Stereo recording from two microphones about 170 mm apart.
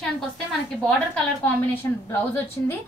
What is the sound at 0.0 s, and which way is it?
A woman's voice, 5° left (ahead or behind).